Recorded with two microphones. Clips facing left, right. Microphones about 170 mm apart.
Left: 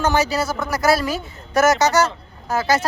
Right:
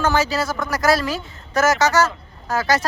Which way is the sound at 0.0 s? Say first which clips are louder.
Left 1 dB; 20° left (ahead or behind).